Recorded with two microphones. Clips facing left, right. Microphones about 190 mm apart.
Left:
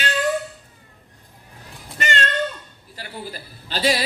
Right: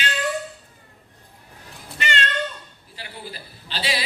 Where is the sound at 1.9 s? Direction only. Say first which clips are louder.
Left 2 dB; 45° left (ahead or behind).